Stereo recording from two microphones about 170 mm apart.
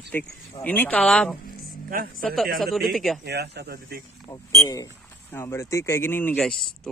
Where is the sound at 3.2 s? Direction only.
70° right (ahead or behind).